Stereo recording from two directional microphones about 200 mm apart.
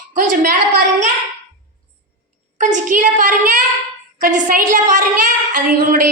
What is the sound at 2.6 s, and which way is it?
A woman's voice, 40° right (ahead or behind).